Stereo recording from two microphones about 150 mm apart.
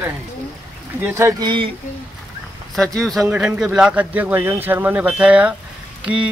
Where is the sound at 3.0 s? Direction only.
Centre (ahead or behind).